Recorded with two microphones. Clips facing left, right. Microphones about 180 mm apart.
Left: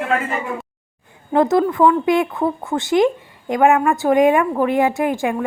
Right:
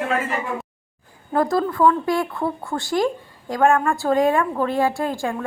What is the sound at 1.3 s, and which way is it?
Speech, 20° left (ahead or behind).